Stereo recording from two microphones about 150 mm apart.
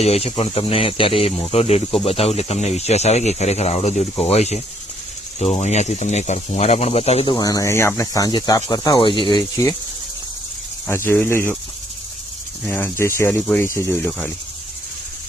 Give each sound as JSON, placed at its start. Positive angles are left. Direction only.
{"t": 0.0, "sound": "speech", "side_deg": 45}
{"t": 7.3, "sound": "speech", "side_deg": 25}
{"t": 10.8, "sound": "speech", "side_deg": 15}
{"t": 12.6, "sound": "speech", "side_deg": 15}